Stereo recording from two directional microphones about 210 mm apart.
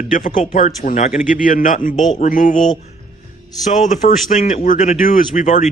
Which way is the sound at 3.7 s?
35° left (ahead or behind).